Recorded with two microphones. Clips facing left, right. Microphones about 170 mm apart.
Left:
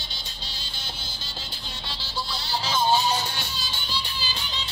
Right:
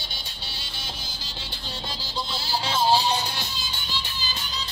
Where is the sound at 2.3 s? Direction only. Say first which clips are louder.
Even; 30° right (ahead or behind).